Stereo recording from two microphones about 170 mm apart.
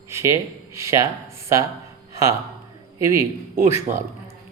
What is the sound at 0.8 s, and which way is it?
Speech, 15° right (ahead or behind).